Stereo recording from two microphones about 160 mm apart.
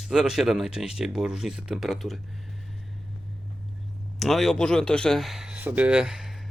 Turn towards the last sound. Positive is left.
turn(degrees=0)  # may be behind; listen again after turning